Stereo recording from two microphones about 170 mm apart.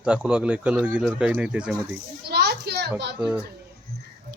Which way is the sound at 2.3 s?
70° right (ahead or behind).